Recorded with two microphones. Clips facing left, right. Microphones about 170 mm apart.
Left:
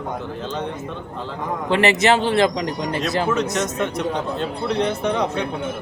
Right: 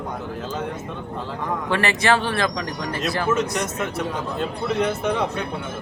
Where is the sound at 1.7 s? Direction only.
20° left (ahead or behind).